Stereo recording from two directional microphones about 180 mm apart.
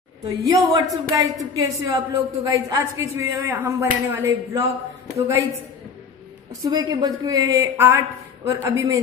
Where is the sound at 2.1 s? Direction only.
20° right (ahead or behind).